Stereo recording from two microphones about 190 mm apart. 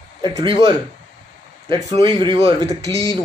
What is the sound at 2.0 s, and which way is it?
Speech, 25° right (ahead or behind).